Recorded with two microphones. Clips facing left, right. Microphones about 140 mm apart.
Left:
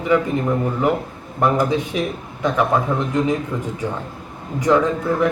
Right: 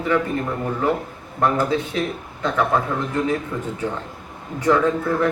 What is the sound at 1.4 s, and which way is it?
Speech, 15° left (ahead or behind).